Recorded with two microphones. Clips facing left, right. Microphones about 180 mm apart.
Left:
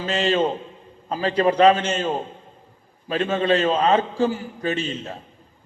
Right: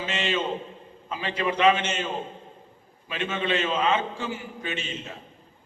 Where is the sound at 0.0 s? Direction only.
40° left (ahead or behind).